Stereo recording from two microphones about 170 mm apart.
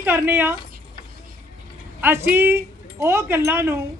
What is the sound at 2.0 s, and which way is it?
A man's voice, 10° right (ahead or behind).